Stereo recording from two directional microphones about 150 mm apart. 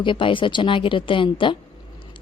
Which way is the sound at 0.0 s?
35° left (ahead or behind).